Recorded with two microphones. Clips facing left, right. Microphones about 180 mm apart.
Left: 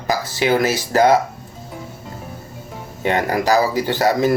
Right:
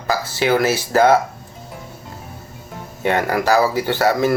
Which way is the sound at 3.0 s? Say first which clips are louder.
Even; 15° left (ahead or behind).